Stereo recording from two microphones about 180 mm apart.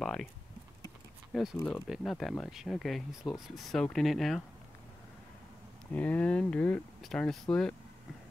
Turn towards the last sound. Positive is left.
turn(degrees=5)  # may be behind; listen again after turning